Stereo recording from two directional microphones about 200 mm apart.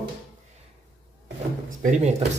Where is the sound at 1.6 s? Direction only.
40° right (ahead or behind).